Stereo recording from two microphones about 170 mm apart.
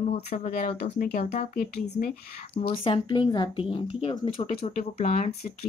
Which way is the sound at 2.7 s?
35° left (ahead or behind).